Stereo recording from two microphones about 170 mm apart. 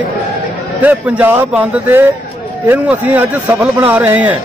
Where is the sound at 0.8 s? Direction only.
10° right (ahead or behind).